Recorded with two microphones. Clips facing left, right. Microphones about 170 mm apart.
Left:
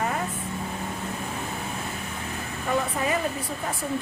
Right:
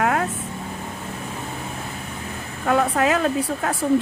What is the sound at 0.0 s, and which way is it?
Vehicle, 80° right.